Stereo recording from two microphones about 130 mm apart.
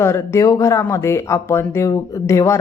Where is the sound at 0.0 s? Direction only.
20° left (ahead or behind).